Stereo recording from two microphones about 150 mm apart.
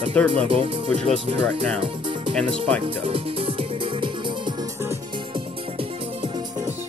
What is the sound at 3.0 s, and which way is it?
Music, 40° right (ahead or behind).